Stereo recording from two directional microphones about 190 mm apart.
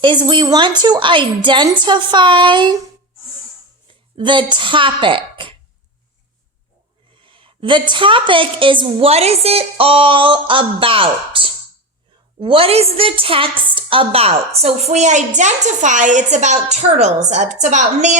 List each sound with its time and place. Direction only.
0.0 s a woman's voice: 25° right (ahead or behind)
3.8 s speech: 25° right (ahead or behind)
7.3 s a woman's voice: 25° right (ahead or behind)